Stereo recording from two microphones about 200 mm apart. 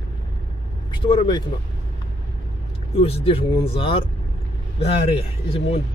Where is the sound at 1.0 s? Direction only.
25° left (ahead or behind).